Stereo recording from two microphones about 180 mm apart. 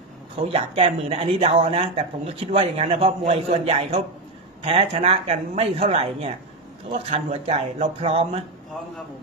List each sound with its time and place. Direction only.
0.4 s speech: 30° right (ahead or behind)